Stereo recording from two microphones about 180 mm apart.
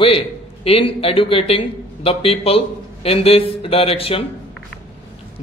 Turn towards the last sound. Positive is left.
turn(degrees=30)  # may be behind; listen again after turning